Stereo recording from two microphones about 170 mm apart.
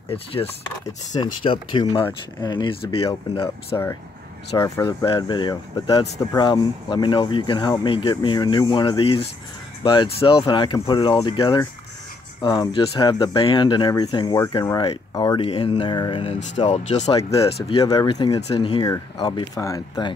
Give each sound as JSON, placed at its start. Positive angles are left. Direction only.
{"t": 0.1, "sound": "speech", "side_deg": 35}
{"t": 3.7, "sound": "speech", "side_deg": 20}
{"t": 15.4, "sound": "speech", "side_deg": 35}
{"t": 16.6, "sound": "speech", "side_deg": 40}
{"t": 17.6, "sound": "speech", "side_deg": 25}